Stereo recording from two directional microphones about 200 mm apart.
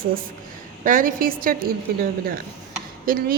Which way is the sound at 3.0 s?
45° right (ahead or behind).